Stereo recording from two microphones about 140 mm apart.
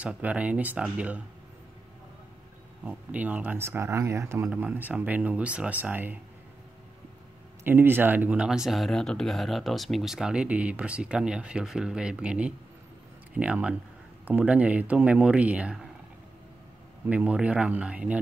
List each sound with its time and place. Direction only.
0.0 s speech: 10° right (ahead or behind)
2.8 s speech: 10° right (ahead or behind)
7.6 s speech: 15° right (ahead or behind)
17.1 s speech: 10° right (ahead or behind)